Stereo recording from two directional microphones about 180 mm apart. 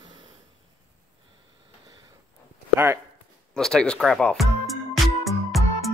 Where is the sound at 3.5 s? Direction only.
5° left (ahead or behind).